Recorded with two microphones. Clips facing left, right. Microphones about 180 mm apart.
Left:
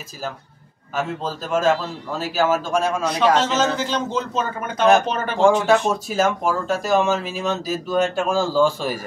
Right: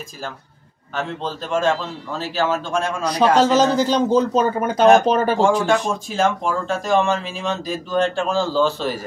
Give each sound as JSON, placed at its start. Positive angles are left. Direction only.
{"t": 0.9, "sound": "speech", "side_deg": 5}
{"t": 3.1, "sound": "a man's voice", "side_deg": -35}
{"t": 5.7, "sound": "a man's voice", "side_deg": 5}